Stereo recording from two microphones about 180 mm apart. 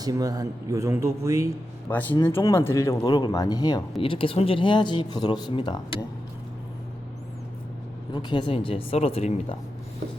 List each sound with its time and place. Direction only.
0.0 s speech: 20° right (ahead or behind)
1.9 s speech: 10° left (ahead or behind)
8.1 s speech: 25° left (ahead or behind)